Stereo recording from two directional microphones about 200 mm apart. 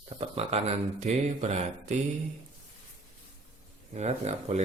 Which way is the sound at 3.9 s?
35° right (ahead or behind).